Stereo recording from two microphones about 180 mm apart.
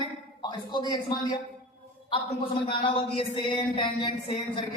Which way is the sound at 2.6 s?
30° left (ahead or behind).